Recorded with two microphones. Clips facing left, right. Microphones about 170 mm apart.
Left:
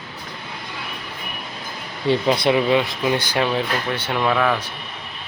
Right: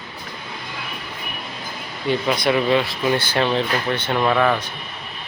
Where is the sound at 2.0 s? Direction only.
30° left (ahead or behind); by 4.6 s centre (ahead or behind).